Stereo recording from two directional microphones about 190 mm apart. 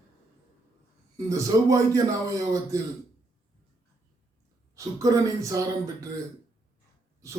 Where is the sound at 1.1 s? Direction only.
15° right (ahead or behind).